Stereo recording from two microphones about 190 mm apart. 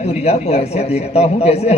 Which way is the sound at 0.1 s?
35° left (ahead or behind).